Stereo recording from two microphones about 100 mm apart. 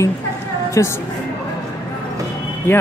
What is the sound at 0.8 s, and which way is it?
Speech, 30° left (ahead or behind).